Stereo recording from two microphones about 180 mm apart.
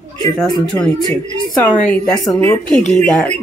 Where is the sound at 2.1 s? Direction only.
20° left (ahead or behind).